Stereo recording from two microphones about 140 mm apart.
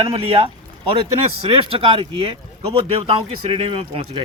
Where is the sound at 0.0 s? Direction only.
40° right (ahead or behind).